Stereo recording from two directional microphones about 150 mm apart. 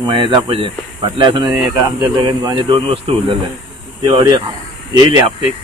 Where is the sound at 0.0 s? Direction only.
35° right (ahead or behind).